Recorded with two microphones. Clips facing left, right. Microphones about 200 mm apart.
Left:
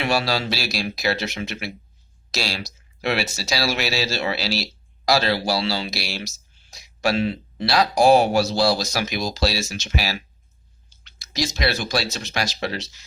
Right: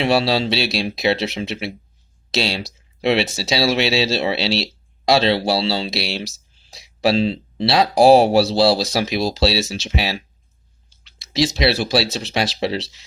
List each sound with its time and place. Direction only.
0.0 s speech: 25° right (ahead or behind)
11.3 s speech: 30° right (ahead or behind)